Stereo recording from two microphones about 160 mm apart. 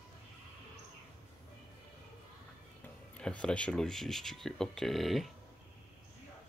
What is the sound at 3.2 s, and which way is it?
Speech, 5° left (ahead or behind).